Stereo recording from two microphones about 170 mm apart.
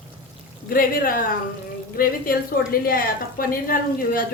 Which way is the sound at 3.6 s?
55° left (ahead or behind).